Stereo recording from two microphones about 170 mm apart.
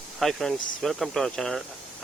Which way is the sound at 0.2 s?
Centre (ahead or behind).